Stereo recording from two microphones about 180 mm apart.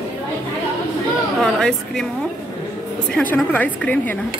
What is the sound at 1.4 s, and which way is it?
Speech, 5° left (ahead or behind).